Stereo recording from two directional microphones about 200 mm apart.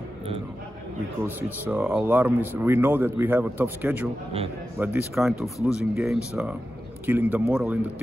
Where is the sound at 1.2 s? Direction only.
10° right (ahead or behind).